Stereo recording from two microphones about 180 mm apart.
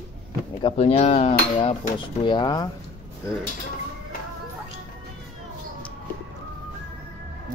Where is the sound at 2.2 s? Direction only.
25° left (ahead or behind).